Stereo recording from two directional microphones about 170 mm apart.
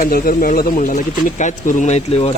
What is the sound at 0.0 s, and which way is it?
Speech, 55° left (ahead or behind).